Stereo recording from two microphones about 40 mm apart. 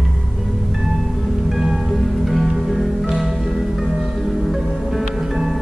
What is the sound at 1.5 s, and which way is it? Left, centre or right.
Music, centre.